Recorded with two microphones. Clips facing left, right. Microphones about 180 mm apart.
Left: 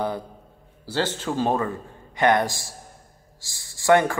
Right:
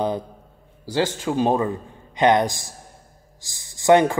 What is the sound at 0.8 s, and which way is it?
A man's voice, 15° right (ahead or behind).